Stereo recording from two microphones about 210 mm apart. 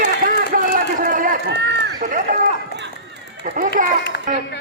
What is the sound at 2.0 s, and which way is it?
Run, 40° right (ahead or behind).